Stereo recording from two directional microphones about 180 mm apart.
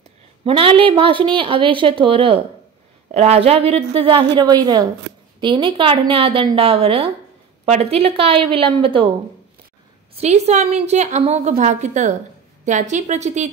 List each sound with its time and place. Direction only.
0.4 s a woman's voice: 30° right (ahead or behind)
10.1 s a woman's voice: 35° right (ahead or behind)